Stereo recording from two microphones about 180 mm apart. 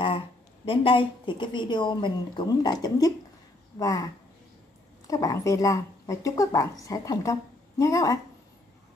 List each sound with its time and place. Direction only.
0.7 s a woman's voice: 30° left (ahead or behind)